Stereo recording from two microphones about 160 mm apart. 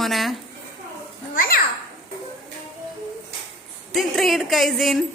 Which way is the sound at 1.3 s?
65° left (ahead or behind).